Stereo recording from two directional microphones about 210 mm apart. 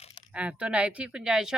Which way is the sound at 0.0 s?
20° left (ahead or behind).